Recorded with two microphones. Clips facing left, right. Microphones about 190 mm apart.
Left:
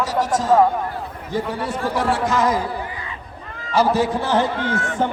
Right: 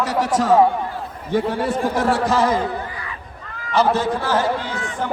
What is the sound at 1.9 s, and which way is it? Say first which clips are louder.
Speech: left 1 dB; 45° right (ahead or behind).